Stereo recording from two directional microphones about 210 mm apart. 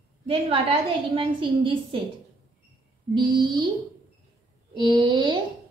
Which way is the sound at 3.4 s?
20° right (ahead or behind).